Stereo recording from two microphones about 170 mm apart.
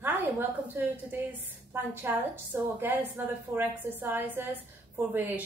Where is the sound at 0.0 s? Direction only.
10° right (ahead or behind).